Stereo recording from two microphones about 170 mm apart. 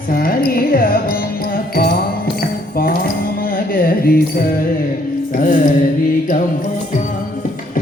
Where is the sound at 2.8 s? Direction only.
60° left (ahead or behind).